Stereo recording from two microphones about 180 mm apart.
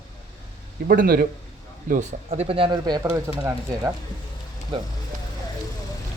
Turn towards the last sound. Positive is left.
turn(degrees=-25)  # may be behind; listen again after turning